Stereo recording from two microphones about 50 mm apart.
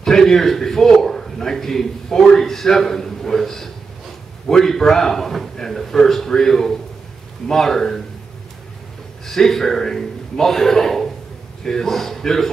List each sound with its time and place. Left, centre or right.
0.0 s a man's voice: centre
9.2 s a man's voice: centre